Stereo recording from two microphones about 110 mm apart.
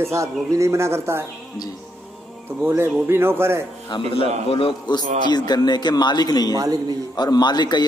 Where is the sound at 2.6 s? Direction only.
25° right (ahead or behind).